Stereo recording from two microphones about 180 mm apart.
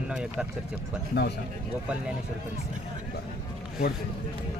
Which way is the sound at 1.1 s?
70° left (ahead or behind).